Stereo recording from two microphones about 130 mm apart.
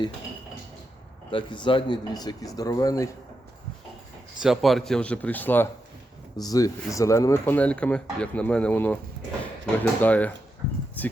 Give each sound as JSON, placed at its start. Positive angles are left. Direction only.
{"t": 1.3, "sound": "speech", "side_deg": 40}
{"t": 4.4, "sound": "speech", "side_deg": 0}
{"t": 6.3, "sound": "speech", "side_deg": 30}
{"t": 7.5, "sound": "speech", "side_deg": 10}
{"t": 11.0, "sound": "a sound", "side_deg": 10}